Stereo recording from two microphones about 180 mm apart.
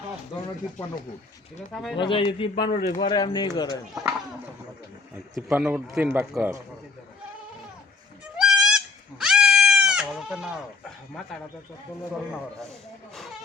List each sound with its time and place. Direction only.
1.7 s speech: centre (ahead or behind)
2.0 s speech: 30° left (ahead or behind)
2.6 s speech: 45° left (ahead or behind)
3.0 s speech: 25° left (ahead or behind)
5.5 s a man's voice: 5° right (ahead or behind)
8.4 s goat: 5° right (ahead or behind)